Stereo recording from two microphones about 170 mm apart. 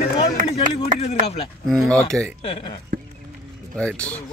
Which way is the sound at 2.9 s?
55° right (ahead or behind).